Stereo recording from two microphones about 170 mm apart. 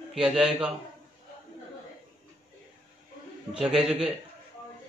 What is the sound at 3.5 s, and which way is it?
Speech, 5° right (ahead or behind).